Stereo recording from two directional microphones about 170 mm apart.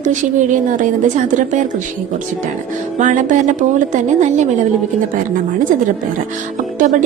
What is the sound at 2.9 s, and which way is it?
A woman's voice, 45° right (ahead or behind).